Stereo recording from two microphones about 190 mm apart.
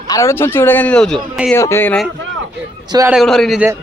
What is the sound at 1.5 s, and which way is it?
Speech, 15° left (ahead or behind).